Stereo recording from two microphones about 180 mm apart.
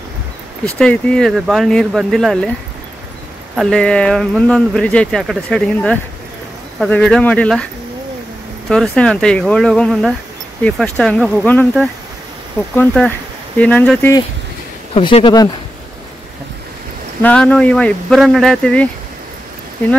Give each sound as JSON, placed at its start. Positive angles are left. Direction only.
{"t": 0.7, "sound": "speech", "side_deg": 5}
{"t": 3.5, "sound": "speech", "side_deg": 5}
{"t": 8.6, "sound": "speech", "side_deg": 5}
{"t": 12.7, "sound": "speech", "side_deg": 5}
{"t": 15.0, "sound": "speech", "side_deg": 30}
{"t": 17.2, "sound": "speech", "side_deg": 5}